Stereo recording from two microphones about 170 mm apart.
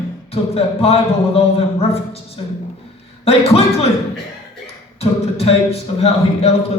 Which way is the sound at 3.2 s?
35° left (ahead or behind).